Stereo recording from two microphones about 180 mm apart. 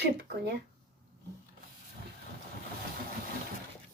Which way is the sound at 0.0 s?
70° right (ahead or behind).